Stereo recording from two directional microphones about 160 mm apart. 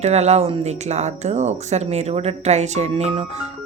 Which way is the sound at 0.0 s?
45° right (ahead or behind).